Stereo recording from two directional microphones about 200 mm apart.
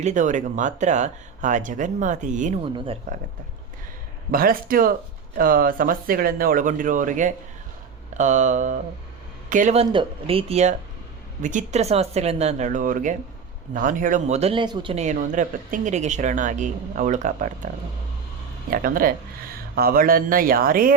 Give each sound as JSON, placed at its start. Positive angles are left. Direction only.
{"t": 0.0, "sound": "speech", "side_deg": -40}
{"t": 2.7, "sound": "speech", "side_deg": -25}
{"t": 4.3, "sound": "speech", "side_deg": -45}
{"t": 9.9, "sound": "speech", "side_deg": -25}
{"t": 18.7, "sound": "speech", "side_deg": -45}